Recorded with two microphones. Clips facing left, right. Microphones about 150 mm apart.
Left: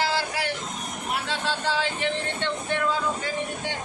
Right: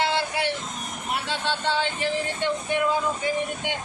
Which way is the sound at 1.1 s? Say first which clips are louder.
Right 1 dB; centre (ahead or behind).